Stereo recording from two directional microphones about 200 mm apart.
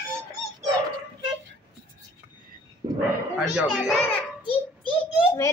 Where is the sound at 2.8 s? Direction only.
20° right (ahead or behind).